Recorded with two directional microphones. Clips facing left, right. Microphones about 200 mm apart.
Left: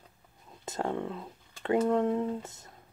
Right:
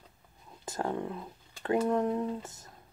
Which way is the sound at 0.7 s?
25° left (ahead or behind).